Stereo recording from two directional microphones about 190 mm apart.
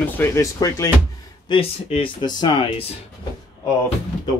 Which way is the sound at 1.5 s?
30° left (ahead or behind).